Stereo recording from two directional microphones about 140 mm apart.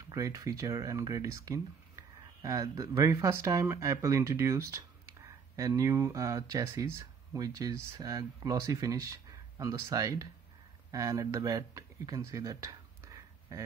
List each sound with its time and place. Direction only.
0.1 s speech: 25° right (ahead or behind)